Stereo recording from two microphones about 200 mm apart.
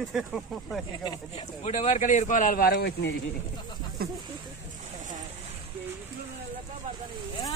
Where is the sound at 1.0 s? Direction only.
25° left (ahead or behind); by 3.1 s 50° left (ahead or behind).